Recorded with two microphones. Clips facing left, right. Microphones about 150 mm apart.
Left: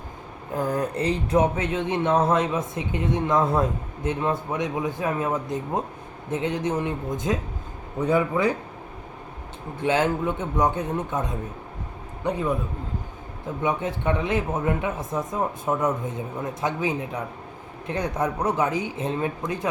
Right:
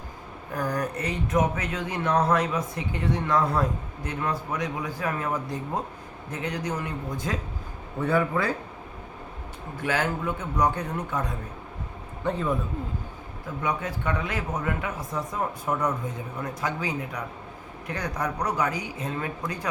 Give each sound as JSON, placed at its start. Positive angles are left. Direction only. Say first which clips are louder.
{"t": 0.5, "sound": "speech", "louder": "left 3 dB", "side_deg": 25}
{"t": 9.8, "sound": "a man's voice", "louder": "left 5 dB", "side_deg": 25}
{"t": 13.6, "sound": "speech", "louder": "left 4 dB", "side_deg": 25}